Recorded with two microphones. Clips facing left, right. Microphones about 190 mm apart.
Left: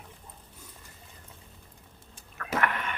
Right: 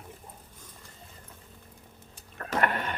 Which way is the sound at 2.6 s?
30° right (ahead or behind).